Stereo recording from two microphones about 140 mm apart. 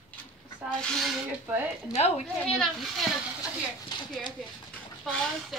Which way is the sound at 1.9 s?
45° left (ahead or behind).